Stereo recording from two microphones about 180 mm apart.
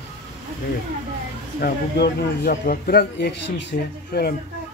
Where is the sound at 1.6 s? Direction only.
60° left (ahead or behind).